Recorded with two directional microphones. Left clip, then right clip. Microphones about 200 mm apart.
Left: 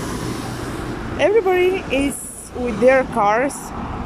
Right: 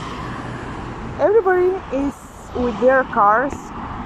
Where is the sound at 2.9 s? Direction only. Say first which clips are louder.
Right 1 dB; 25° left (ahead or behind).